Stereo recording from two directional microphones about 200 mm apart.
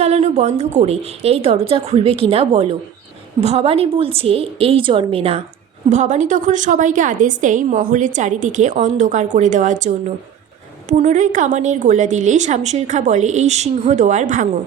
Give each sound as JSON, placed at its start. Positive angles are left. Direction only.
{"t": 0.0, "sound": "a woman's voice", "side_deg": -30}